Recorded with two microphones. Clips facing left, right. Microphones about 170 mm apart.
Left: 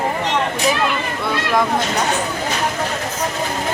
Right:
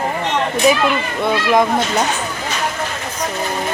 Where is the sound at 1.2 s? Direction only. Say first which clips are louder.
Right 5 dB; 20° right (ahead or behind).